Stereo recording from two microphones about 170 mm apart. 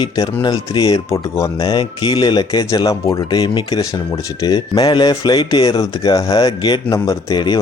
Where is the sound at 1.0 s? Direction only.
15° left (ahead or behind).